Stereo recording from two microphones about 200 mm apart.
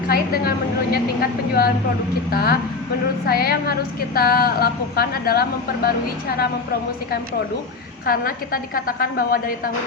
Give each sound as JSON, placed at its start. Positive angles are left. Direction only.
{"t": 0.1, "sound": "a woman's voice", "side_deg": 50}
{"t": 8.0, "sound": "a woman's voice", "side_deg": 45}